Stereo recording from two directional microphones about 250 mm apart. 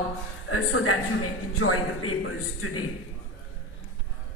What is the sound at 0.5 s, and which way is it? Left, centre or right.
A man's voice, left.